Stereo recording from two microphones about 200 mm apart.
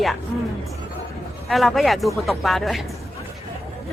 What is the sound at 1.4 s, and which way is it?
Speech, centre (ahead or behind).